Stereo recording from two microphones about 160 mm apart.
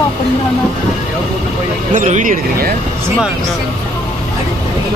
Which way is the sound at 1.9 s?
50° right (ahead or behind).